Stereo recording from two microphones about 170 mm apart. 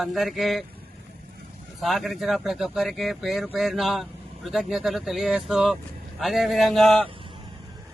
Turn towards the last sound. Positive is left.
turn(degrees=-30)  # may be behind; listen again after turning